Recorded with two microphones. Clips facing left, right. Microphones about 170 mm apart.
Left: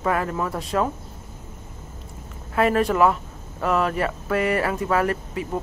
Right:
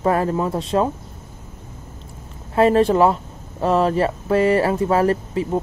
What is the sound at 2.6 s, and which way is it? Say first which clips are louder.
Speech: right 5 dB; 30° right (ahead or behind).